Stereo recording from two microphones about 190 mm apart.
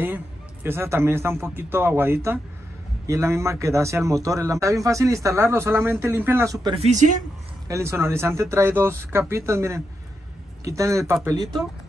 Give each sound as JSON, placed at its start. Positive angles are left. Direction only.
{"t": 0.7, "sound": "a man's voice", "side_deg": -15}
{"t": 6.7, "sound": "speech", "side_deg": -35}
{"t": 7.6, "sound": "a man's voice", "side_deg": -15}